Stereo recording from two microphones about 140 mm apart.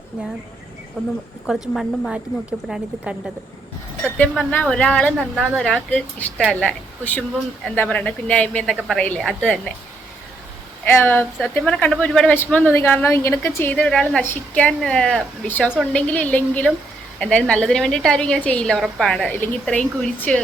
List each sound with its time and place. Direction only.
1.5 s a woman's voice: 5° right (ahead or behind)
4.0 s speech: 10° left (ahead or behind)
10.8 s a woman's voice: 15° left (ahead or behind)